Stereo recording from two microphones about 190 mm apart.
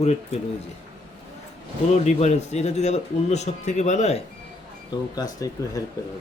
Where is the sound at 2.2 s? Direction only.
35° left (ahead or behind).